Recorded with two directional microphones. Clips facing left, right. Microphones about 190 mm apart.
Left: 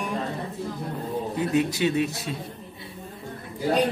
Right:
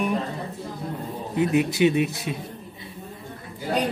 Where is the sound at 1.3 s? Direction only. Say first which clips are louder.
Right 4 dB; 15° right (ahead or behind).